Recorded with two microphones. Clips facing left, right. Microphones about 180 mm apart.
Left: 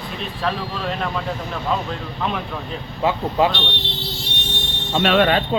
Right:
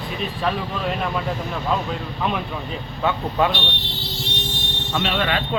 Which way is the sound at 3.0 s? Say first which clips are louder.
Left 2 dB; 30° left (ahead or behind).